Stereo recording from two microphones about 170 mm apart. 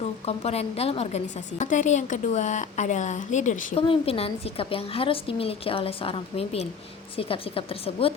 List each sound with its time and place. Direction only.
0.0 s a woman's voice: 40° left (ahead or behind)
3.8 s a woman's voice: 35° left (ahead or behind)